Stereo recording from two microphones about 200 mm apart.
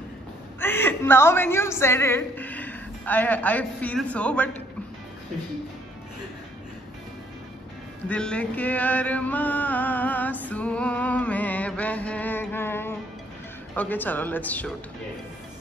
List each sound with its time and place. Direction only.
0.6 s a woman's voice: 10° left (ahead or behind)
8.1 s chant: 5° left (ahead or behind)
13.7 s speech: 10° left (ahead or behind)